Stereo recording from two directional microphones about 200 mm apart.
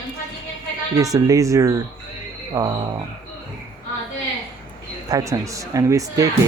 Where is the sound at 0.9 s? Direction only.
15° right (ahead or behind).